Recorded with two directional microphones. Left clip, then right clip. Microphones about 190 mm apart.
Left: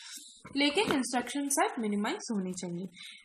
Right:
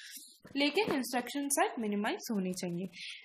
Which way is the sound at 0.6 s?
10° right (ahead or behind).